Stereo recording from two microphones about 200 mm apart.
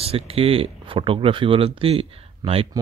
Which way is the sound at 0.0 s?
30° right (ahead or behind).